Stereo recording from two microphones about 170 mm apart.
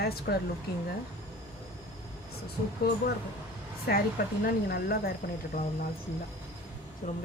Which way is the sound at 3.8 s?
60° left (ahead or behind).